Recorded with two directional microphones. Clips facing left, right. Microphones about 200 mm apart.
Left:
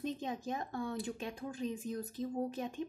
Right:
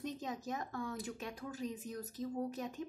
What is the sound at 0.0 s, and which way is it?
A woman's voice, 25° left (ahead or behind).